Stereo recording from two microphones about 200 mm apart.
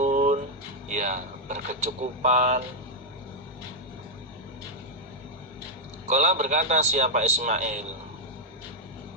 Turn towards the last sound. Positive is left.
turn(degrees=-35)  # may be behind; listen again after turning